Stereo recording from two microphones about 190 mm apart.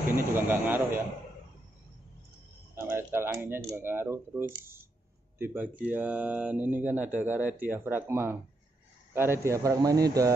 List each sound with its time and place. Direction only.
0.1 s speech: 10° right (ahead or behind)
2.7 s speech: 15° right (ahead or behind)